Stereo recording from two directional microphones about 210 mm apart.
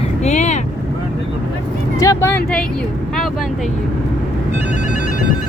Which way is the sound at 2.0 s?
15° left (ahead or behind).